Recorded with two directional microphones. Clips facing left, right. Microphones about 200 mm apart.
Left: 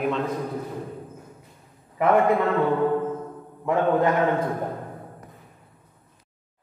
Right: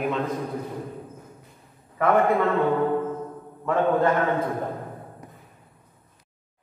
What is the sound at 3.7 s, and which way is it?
Speech, 15° left (ahead or behind).